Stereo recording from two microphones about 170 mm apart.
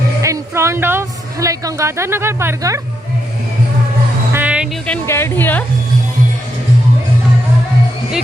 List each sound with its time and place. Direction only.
0.2 s a sound: 15° right (ahead or behind)
4.3 s music: 10° right (ahead or behind)
4.9 s speech: 15° left (ahead or behind)